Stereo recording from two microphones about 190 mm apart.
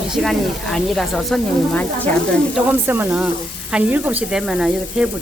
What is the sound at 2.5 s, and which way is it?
Speech, 10° right (ahead or behind).